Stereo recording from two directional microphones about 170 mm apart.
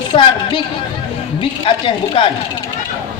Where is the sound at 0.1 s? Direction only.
30° left (ahead or behind).